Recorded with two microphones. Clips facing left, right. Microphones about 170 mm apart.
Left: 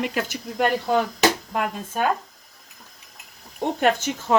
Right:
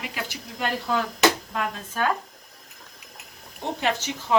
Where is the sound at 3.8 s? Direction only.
50° left (ahead or behind).